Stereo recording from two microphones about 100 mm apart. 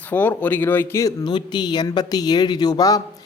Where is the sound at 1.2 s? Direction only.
50° left (ahead or behind).